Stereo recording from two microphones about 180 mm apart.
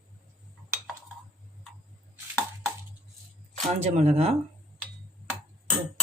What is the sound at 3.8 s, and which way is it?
Speech, 35° right (ahead or behind).